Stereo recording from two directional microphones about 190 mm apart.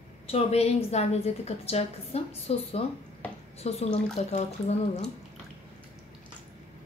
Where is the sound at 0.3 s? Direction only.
35° left (ahead or behind).